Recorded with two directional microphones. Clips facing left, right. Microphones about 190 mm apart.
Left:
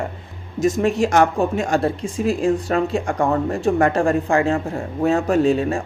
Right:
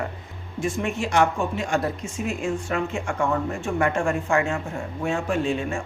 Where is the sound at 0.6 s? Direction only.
40° left (ahead or behind).